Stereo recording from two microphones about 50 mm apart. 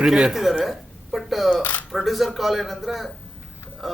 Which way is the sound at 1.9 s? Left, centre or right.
Centre.